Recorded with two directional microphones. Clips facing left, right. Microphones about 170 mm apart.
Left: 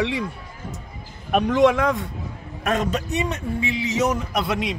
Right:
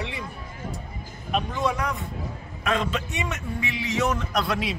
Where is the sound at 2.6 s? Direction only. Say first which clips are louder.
Left 3 dB; 45° left (ahead or behind); by 4.2 s 20° left (ahead or behind).